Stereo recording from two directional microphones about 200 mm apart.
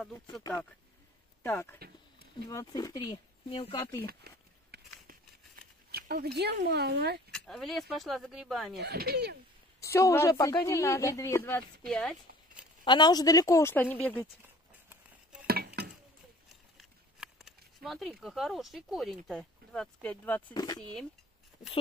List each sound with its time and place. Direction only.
0.3 s a woman's voice: 15° left (ahead or behind)
4.0 s a sound: 50° right (ahead or behind)
5.9 s speech: 50° right (ahead or behind)
7.2 s speech: centre (ahead or behind)
8.7 s speech: 55° right (ahead or behind)
9.8 s a woman's voice: 15° left (ahead or behind)
11.9 s a sound: 5° left (ahead or behind)
12.8 s a woman's voice: 20° left (ahead or behind)
15.4 s a sound: 50° right (ahead or behind)
16.7 s speech: centre (ahead or behind)
20.5 s speech: 20° left (ahead or behind)